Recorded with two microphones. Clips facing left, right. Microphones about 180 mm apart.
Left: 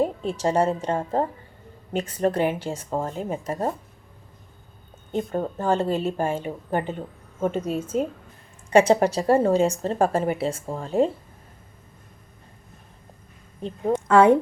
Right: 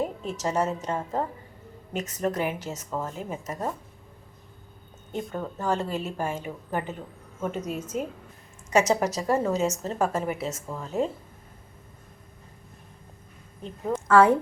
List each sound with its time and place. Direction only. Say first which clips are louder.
0.0 s a woman's voice: left 6 dB; 30° left (ahead or behind)
5.1 s a woman's voice: left 6 dB; 35° left (ahead or behind)
13.6 s a woman's voice: left 5 dB; 25° left (ahead or behind)